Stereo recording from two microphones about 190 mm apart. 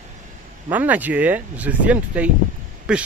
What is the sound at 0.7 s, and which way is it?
Speech, 10° right (ahead or behind).